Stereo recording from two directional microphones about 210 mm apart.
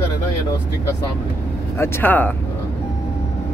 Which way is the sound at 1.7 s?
10° left (ahead or behind).